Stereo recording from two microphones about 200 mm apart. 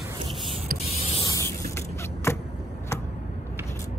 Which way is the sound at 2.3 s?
15° left (ahead or behind).